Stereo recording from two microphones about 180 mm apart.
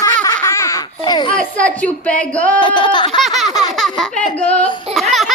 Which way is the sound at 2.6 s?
25° left (ahead or behind).